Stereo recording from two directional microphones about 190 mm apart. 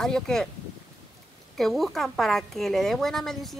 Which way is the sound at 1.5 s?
Centre (ahead or behind).